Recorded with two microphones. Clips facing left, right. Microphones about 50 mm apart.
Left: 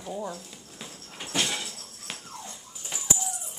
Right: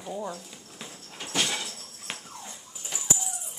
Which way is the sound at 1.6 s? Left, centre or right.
Centre.